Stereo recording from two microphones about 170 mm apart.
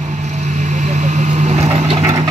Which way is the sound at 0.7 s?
45° right (ahead or behind).